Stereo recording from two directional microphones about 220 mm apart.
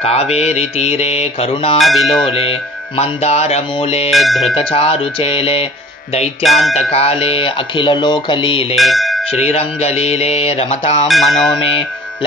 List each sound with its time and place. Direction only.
0.0 s speech: 30° left (ahead or behind)
1.8 s speech: centre (ahead or behind)
3.0 s speech: 30° left (ahead or behind)
4.1 s speech: centre (ahead or behind)
4.6 s speech: 25° left (ahead or behind)
6.4 s speech: centre (ahead or behind)
6.9 s speech: 25° left (ahead or behind)
8.7 s speech: centre (ahead or behind)
9.3 s speech: 30° left (ahead or behind)
11.1 s speech: centre (ahead or behind)